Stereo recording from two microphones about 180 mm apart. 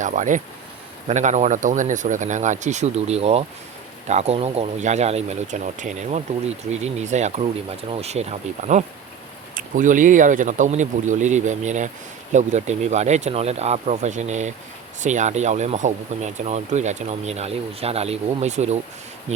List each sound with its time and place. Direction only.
0.0 s speech: 45° right (ahead or behind)